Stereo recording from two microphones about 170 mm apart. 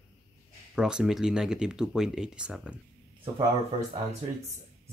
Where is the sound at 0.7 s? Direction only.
5° right (ahead or behind).